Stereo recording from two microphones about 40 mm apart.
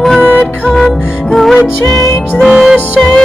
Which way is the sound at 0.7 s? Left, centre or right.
Centre.